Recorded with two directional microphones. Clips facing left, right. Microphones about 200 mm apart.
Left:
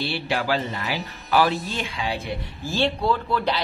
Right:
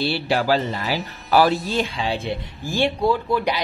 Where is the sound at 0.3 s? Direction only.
35° right (ahead or behind).